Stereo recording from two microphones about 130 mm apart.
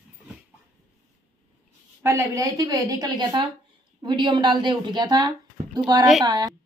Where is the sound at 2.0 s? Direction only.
25° right (ahead or behind).